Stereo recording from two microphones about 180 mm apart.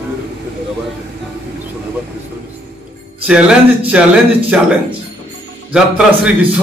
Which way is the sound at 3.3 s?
5° right (ahead or behind).